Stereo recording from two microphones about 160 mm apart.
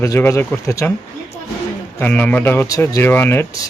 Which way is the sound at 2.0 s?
10° left (ahead or behind).